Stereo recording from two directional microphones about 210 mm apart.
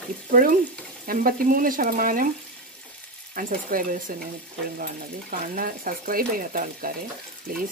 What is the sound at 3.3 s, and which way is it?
Speech, 40° right (ahead or behind).